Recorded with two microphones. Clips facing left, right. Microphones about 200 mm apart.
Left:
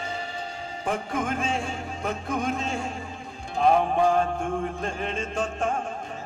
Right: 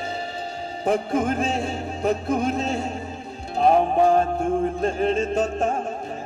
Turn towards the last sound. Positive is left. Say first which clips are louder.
# right 5 dB
turn(degrees=-40)  # may be behind; listen again after turning